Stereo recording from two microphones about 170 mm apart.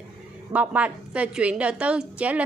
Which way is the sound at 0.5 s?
10° right (ahead or behind).